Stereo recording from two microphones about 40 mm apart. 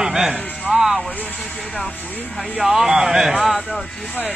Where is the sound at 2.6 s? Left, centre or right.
Centre.